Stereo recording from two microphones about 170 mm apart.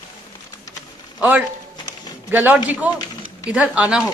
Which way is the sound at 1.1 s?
10° right (ahead or behind).